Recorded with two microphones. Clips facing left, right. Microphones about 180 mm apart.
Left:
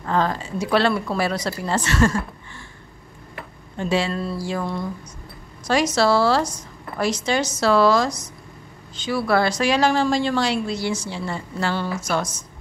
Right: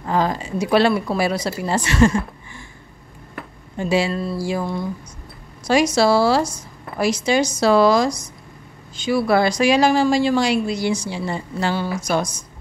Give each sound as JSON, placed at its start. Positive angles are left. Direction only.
{"t": 0.0, "sound": "a woman's voice", "side_deg": -15}
{"t": 3.7, "sound": "a woman's voice", "side_deg": -10}